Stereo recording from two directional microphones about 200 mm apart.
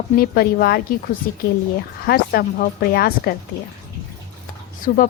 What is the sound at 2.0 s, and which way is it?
Speech, 50° left (ahead or behind).